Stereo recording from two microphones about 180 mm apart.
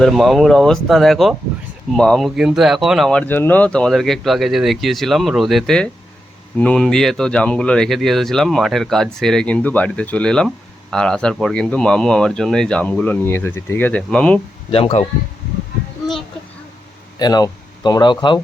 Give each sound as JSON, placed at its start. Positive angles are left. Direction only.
{"t": 0.0, "sound": "speech", "side_deg": 0}
{"t": 14.7, "sound": "speech", "side_deg": 35}
{"t": 17.2, "sound": "speech", "side_deg": 20}